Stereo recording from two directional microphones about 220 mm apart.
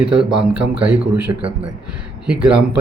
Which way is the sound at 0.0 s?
5° right (ahead or behind).